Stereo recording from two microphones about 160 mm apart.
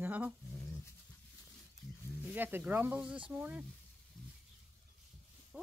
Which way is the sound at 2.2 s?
10° right (ahead or behind).